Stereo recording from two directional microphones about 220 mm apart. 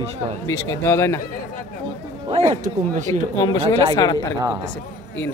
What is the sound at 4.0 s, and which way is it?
Speech, 15° left (ahead or behind).